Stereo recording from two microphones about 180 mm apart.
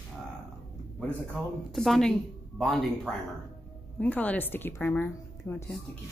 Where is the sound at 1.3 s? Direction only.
Centre (ahead or behind).